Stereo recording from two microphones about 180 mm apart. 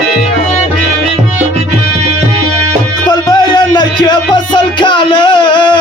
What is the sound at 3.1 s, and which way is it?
Music, 25° left (ahead or behind).